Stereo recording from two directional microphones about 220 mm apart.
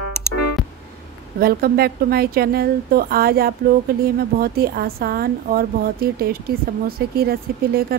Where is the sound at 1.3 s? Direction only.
45° right (ahead or behind).